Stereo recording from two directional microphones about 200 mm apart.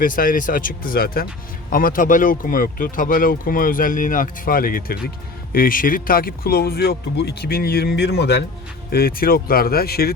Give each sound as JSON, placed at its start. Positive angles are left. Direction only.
{"t": 0.0, "sound": "speech", "side_deg": 45}